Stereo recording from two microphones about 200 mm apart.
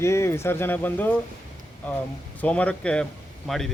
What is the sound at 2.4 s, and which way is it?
Speech, 5° left (ahead or behind).